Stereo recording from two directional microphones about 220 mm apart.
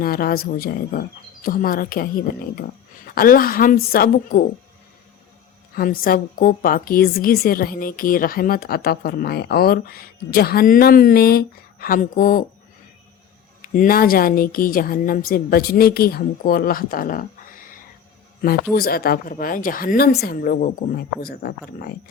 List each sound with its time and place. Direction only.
0.0 s a woman's voice: 45° left (ahead or behind)
5.7 s a woman's voice: 40° left (ahead or behind)
13.6 s a woman's voice: 40° left (ahead or behind)
18.7 s a woman's voice: 45° left (ahead or behind)